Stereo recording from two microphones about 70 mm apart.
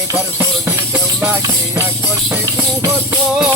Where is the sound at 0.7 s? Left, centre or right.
Right.